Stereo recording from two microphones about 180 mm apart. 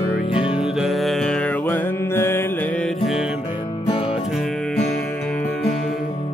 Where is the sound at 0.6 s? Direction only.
5° right (ahead or behind).